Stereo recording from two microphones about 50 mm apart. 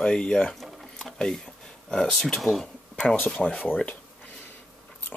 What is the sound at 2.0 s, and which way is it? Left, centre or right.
Speech, centre.